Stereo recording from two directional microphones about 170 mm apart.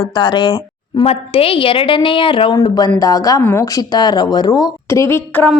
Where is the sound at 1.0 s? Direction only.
35° left (ahead or behind).